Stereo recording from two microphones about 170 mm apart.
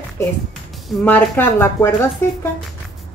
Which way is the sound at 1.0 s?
10° left (ahead or behind).